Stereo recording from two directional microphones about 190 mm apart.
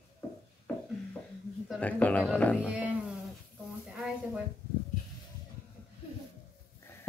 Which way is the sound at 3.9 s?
5° right (ahead or behind).